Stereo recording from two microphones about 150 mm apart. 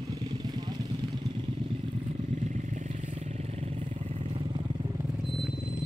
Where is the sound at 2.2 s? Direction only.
50° right (ahead or behind); by 5.0 s 30° right (ahead or behind).